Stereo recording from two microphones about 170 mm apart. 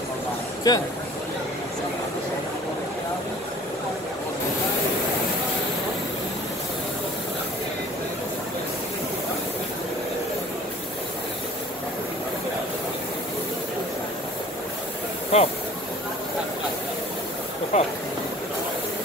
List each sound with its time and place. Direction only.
0.7 s speech: 20° left (ahead or behind)
15.3 s speech: 40° left (ahead or behind)
17.7 s a sound: 45° left (ahead or behind)